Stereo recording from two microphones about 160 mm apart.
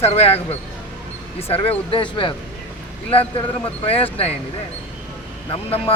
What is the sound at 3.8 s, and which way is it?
Speech, 35° left (ahead or behind).